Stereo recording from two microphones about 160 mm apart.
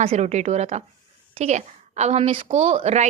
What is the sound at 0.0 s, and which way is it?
A woman's voice, 45° right (ahead or behind).